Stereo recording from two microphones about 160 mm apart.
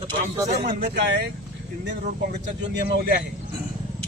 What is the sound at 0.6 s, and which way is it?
Speech, 90° right.